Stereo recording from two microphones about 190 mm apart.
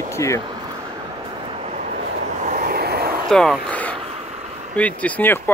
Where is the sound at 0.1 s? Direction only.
15° left (ahead or behind).